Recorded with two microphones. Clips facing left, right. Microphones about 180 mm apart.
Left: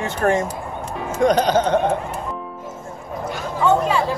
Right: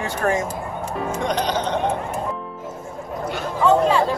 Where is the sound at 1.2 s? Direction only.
45° left (ahead or behind).